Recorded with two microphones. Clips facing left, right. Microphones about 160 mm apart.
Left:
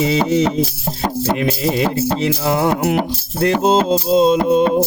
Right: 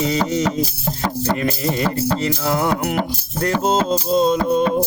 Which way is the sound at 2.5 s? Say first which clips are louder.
Left 4 dB; 15° left (ahead or behind).